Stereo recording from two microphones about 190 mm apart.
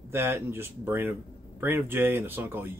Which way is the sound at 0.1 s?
10° right (ahead or behind).